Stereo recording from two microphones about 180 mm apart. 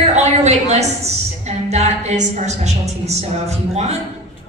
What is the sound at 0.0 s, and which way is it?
A woman's voice, 35° right (ahead or behind).